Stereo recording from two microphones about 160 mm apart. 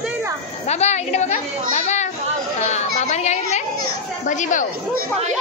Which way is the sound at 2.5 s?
45° left (ahead or behind).